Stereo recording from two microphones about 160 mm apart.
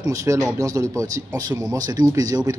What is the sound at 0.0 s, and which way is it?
Speech, 20° right (ahead or behind).